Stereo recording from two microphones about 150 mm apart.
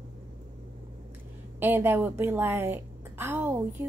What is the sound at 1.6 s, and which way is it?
A woman's voice, 15° right (ahead or behind).